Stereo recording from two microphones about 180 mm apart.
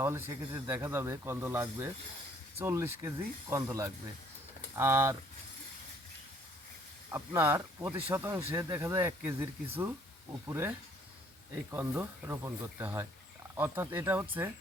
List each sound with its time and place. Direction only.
0.0 s speech: 15° right (ahead or behind)
7.1 s speech: 15° right (ahead or behind)